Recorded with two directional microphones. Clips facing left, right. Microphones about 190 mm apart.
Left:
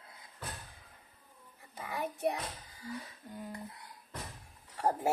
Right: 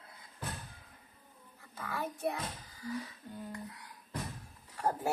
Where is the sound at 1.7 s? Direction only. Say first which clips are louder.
Left 1 dB; 15° left (ahead or behind).